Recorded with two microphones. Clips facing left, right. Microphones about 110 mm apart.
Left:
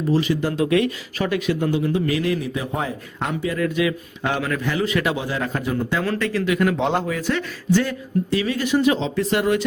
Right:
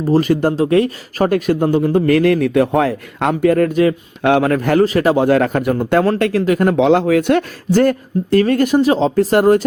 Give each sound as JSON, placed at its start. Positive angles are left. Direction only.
{"t": 0.0, "sound": "a man's voice", "side_deg": -45}
{"t": 0.5, "sound": "a man's voice", "side_deg": -35}
{"t": 4.2, "sound": "a man's voice", "side_deg": -60}
{"t": 4.9, "sound": "speech", "side_deg": -40}
{"t": 5.2, "sound": "a man's voice", "side_deg": -65}
{"t": 6.4, "sound": "speech", "side_deg": -40}
{"t": 6.7, "sound": "speech", "side_deg": -90}
{"t": 7.7, "sound": "a man's voice", "side_deg": -50}